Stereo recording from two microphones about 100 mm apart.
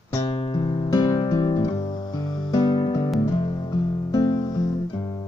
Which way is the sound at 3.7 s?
40° left (ahead or behind).